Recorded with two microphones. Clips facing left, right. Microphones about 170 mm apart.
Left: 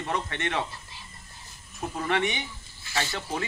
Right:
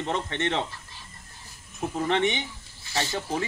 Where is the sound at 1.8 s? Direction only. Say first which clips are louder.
Right 3 dB; 20° right (ahead or behind).